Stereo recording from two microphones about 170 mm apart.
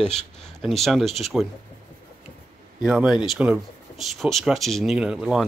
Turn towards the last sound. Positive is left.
turn(degrees=-5)  # may be behind; listen again after turning